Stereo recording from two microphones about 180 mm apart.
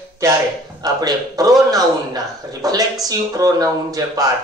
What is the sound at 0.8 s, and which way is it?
A man's voice, 20° right (ahead or behind).